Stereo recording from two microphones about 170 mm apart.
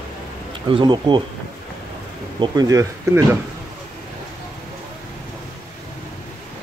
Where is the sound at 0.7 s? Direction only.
30° right (ahead or behind).